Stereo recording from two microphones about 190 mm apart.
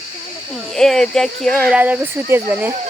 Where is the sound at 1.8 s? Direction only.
10° right (ahead or behind).